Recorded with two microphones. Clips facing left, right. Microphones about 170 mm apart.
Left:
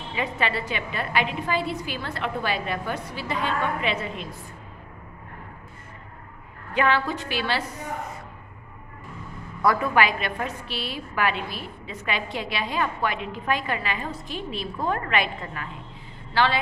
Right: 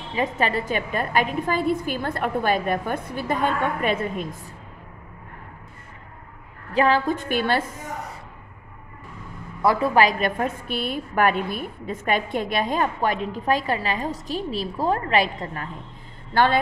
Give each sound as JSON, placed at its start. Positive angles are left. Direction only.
{"t": 0.1, "sound": "a woman's voice", "side_deg": -45}
{"t": 6.7, "sound": "a woman's voice", "side_deg": -35}
{"t": 9.6, "sound": "a woman's voice", "side_deg": -30}
{"t": 16.3, "sound": "a woman's voice", "side_deg": -50}